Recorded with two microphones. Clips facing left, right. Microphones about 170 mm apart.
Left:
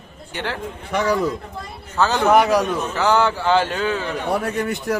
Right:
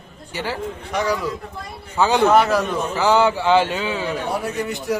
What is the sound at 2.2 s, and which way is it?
Speech, 15° left (ahead or behind).